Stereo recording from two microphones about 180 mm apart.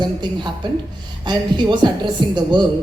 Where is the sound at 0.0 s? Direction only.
25° right (ahead or behind).